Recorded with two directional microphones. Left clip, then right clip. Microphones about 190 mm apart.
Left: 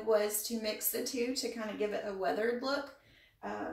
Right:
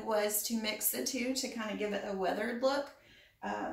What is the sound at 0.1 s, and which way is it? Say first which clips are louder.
A woman's voice: left 2 dB; 15° right (ahead or behind).